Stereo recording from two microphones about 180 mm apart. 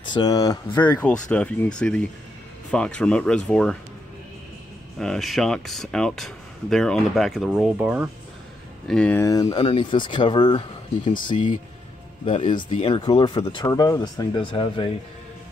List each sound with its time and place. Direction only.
0.0 s speech: 25° left (ahead or behind)
0.8 s speech: 5° left (ahead or behind)
4.9 s speech: 5° left (ahead or behind)
8.8 s speech: 5° left (ahead or behind); by 14.9 s 30° left (ahead or behind)